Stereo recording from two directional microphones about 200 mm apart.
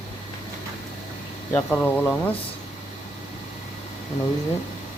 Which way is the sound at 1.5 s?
5° left (ahead or behind).